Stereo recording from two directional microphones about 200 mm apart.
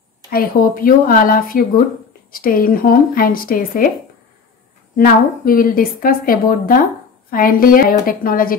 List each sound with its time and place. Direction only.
0.3 s a woman's voice: 45° left (ahead or behind)
4.9 s a woman's voice: 45° left (ahead or behind)